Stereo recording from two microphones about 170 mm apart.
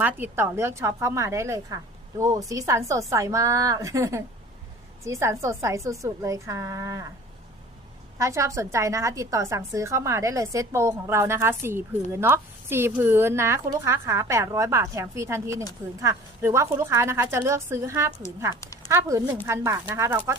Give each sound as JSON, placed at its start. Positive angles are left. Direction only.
{"t": 0.0, "sound": "a woman's voice", "side_deg": -15}
{"t": 8.2, "sound": "a woman's voice", "side_deg": -15}
{"t": 18.5, "sound": "a sound", "side_deg": 20}
{"t": 18.9, "sound": "a woman's voice", "side_deg": -20}